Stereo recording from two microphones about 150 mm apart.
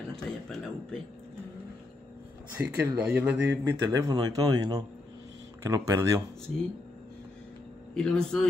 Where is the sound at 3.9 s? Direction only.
25° right (ahead or behind).